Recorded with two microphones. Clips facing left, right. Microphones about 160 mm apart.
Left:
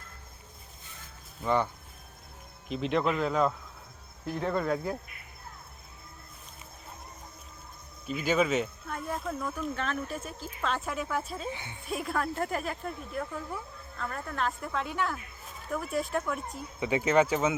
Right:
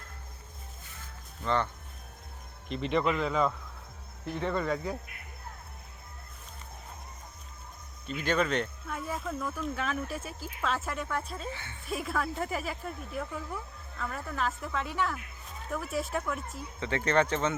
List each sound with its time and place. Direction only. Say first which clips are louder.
1.5 s speech: left 2 dB; 10° left (ahead or behind)
8.0 s speech: left 2 dB; 5° left (ahead or behind)
11.5 s speech: left 2 dB; 15° left (ahead or behind)
11.9 s speech: left 1 dB; centre (ahead or behind)